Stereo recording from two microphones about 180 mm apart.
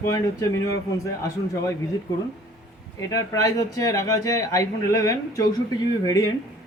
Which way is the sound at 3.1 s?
20° left (ahead or behind).